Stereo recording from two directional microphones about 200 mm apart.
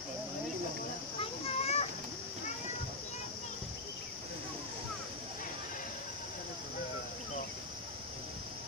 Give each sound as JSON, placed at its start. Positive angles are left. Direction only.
{"t": 1.2, "sound": "children playing", "side_deg": 30}